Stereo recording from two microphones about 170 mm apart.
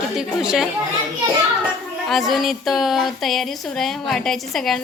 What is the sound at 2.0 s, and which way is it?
Speech, centre (ahead or behind).